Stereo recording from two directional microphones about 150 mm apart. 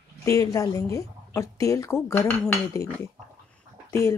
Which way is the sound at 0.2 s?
20° left (ahead or behind).